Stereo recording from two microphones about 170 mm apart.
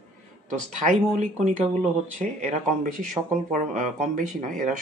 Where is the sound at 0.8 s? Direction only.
45° right (ahead or behind).